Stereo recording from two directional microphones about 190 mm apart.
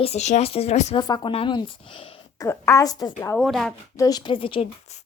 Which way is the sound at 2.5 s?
15° left (ahead or behind).